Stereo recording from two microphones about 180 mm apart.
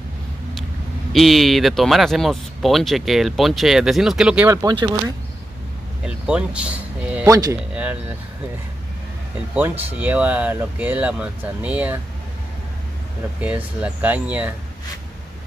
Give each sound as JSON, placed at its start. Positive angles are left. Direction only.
{"t": 1.1, "sound": "speech", "side_deg": 0}
{"t": 4.5, "sound": "speech", "side_deg": -20}
{"t": 6.0, "sound": "speech", "side_deg": -5}
{"t": 7.2, "sound": "speech", "side_deg": -20}
{"t": 7.7, "sound": "speech", "side_deg": -10}
{"t": 9.6, "sound": "speech", "side_deg": -10}
{"t": 13.4, "sound": "speech", "side_deg": -10}